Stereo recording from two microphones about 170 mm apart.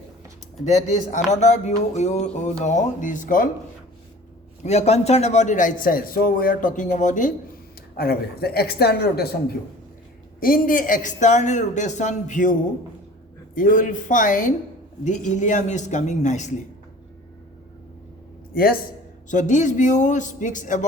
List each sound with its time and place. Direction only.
0.6 s speech: 45° left (ahead or behind)
4.6 s speech: 40° left (ahead or behind)
7.9 s speech: 65° left (ahead or behind)
10.4 s speech: 55° left (ahead or behind)
18.5 s a man's voice: 60° left (ahead or behind)
19.3 s speech: 45° left (ahead or behind)